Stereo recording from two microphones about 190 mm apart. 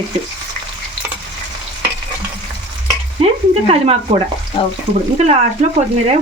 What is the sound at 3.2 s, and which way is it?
Speech, 35° right (ahead or behind).